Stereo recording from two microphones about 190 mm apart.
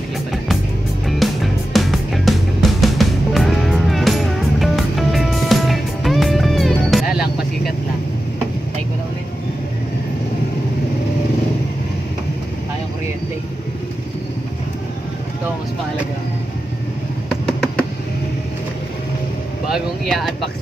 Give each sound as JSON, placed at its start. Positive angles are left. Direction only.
{"t": 1.0, "sound": "music", "side_deg": 0}
{"t": 17.3, "sound": "music", "side_deg": 0}
{"t": 19.7, "sound": "vehicle", "side_deg": 0}